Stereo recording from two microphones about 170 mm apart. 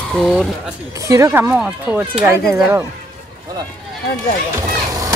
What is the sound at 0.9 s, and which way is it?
Speech, 20° right (ahead or behind).